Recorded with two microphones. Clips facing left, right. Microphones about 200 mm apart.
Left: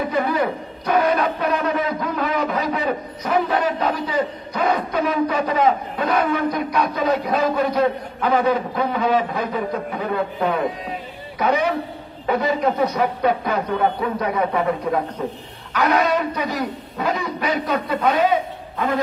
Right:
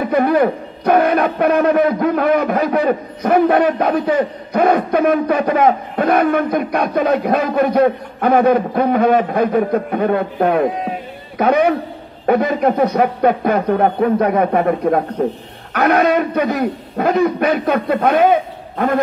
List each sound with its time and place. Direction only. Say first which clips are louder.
0.1 s a man's voice: right 7 dB; 55° right (ahead or behind)